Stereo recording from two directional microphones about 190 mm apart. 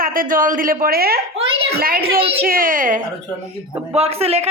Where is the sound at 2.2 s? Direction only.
30° right (ahead or behind).